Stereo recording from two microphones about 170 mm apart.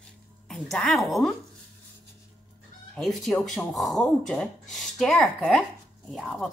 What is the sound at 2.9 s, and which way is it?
Speech, centre (ahead or behind).